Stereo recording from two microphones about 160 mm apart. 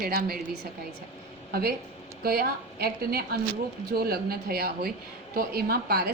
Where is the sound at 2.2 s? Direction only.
75° right (ahead or behind).